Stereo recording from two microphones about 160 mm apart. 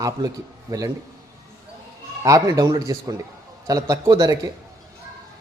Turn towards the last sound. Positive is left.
turn(degrees=-25)  # may be behind; listen again after turning